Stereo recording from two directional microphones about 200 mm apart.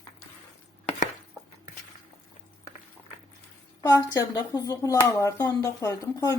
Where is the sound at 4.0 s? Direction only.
20° left (ahead or behind).